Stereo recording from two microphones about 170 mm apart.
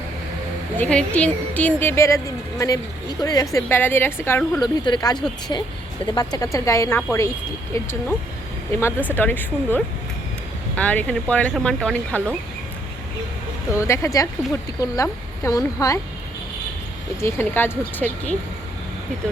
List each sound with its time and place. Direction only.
0.8 s a woman's voice: 5° left (ahead or behind)
4.6 s speech: 25° left (ahead or behind)
8.7 s a woman's voice: 15° left (ahead or behind)
13.7 s a woman's voice: 15° left (ahead or behind)
17.2 s a woman's voice: 15° left (ahead or behind)